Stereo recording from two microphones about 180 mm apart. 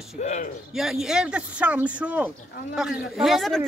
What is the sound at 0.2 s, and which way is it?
Speech, 40° left (ahead or behind).